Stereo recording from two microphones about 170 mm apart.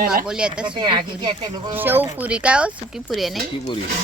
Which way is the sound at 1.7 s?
10° right (ahead or behind).